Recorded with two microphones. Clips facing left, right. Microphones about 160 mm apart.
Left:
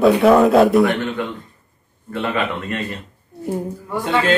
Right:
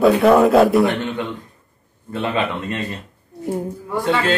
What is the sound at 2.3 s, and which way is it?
Speech, 20° right (ahead or behind).